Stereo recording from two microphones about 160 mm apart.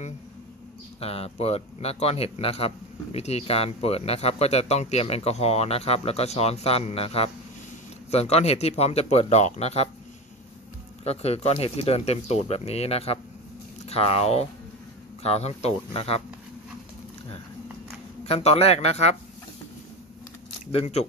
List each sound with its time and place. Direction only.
1.0 s a man's voice: 40° left (ahead or behind)
11.1 s a man's voice: 40° left (ahead or behind)
18.2 s a man's voice: 40° left (ahead or behind)
20.7 s a man's voice: 40° left (ahead or behind)